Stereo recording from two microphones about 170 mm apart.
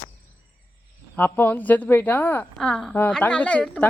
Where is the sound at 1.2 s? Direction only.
10° left (ahead or behind).